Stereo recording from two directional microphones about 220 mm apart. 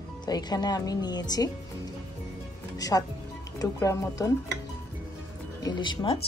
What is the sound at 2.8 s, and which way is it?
Speech, 15° left (ahead or behind).